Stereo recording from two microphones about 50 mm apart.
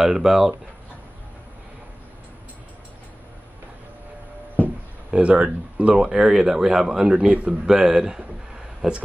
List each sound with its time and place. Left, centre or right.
0.0 s speech: centre
5.1 s speech: right
6.2 s speech: centre
7.2 s speech: right
7.6 s speech: centre